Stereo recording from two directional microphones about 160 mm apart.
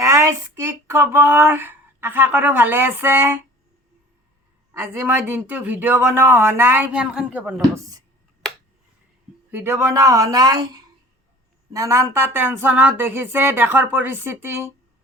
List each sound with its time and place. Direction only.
0.0 s speech: 20° right (ahead or behind)
4.7 s speech: 15° right (ahead or behind)
9.5 s a woman's voice: 15° right (ahead or behind)